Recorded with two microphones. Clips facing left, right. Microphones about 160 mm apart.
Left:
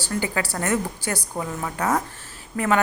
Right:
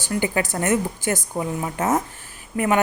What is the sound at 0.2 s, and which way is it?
A woman's voice, 20° right (ahead or behind).